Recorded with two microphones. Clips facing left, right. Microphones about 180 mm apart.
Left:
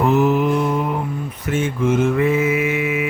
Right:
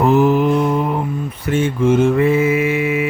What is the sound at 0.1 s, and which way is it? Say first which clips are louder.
Mantra: right 3 dB; 35° right (ahead or behind).